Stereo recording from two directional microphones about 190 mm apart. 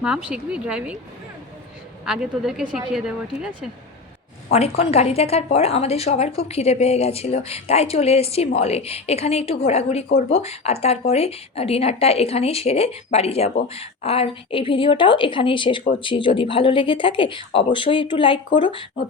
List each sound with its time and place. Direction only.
0.0 s a woman's voice: 5° right (ahead or behind)
2.0 s a woman's voice: centre (ahead or behind)
4.5 s speech: 35° left (ahead or behind)